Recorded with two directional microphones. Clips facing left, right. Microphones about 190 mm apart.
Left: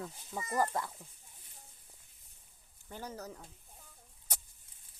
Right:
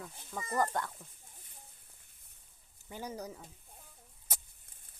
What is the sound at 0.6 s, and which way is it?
Speech, 5° left (ahead or behind).